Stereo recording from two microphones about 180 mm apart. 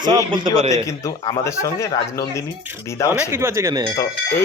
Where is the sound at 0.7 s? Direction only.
15° left (ahead or behind).